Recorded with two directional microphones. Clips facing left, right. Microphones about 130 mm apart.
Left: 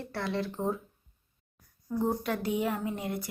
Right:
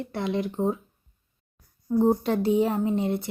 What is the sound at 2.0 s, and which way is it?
Speech, 30° right (ahead or behind).